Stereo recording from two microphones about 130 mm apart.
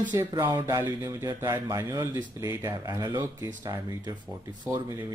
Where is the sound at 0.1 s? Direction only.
25° right (ahead or behind).